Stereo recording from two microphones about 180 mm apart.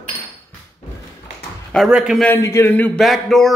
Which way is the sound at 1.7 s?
Centre (ahead or behind).